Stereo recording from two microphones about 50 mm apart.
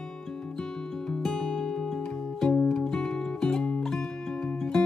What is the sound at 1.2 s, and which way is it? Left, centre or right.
Music, centre.